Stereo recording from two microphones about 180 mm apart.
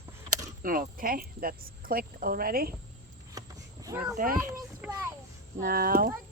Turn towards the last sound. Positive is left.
turn(degrees=-55)  # may be behind; listen again after turning